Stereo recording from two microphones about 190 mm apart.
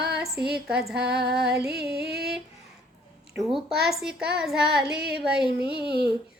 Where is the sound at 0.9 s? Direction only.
60° right (ahead or behind).